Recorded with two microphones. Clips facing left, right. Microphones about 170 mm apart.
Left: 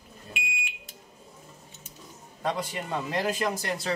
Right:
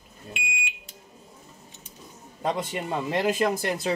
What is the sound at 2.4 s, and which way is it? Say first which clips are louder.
A man's voice: right 3 dB; 20° right (ahead or behind).